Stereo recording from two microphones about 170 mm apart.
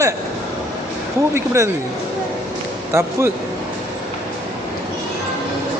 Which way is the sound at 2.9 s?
15° right (ahead or behind).